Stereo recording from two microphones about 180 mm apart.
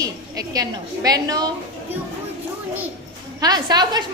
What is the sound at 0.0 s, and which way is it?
A woman's voice, 20° right (ahead or behind).